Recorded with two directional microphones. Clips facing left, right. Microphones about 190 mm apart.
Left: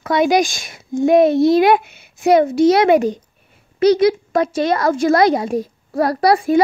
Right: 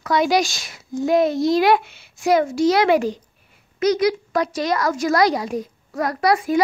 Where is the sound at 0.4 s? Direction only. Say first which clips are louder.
Left 4 dB; 50° left (ahead or behind).